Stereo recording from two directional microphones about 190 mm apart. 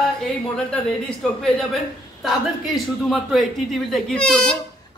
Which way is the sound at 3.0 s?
Centre (ahead or behind).